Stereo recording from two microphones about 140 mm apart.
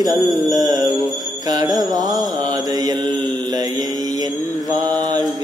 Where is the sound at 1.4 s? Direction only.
25° right (ahead or behind).